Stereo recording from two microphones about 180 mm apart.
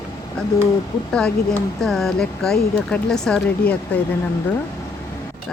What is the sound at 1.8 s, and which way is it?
Speech, centre (ahead or behind).